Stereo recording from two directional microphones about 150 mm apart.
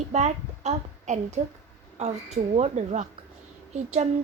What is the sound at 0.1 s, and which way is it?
A woman's voice, 50° right (ahead or behind).